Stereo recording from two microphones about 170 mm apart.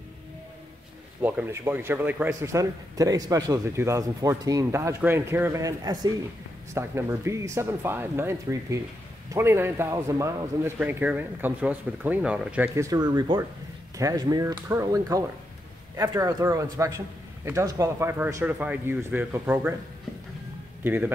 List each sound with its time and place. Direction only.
1.2 s a man's voice: 10° right (ahead or behind)
20.8 s a man's voice: 10° right (ahead or behind)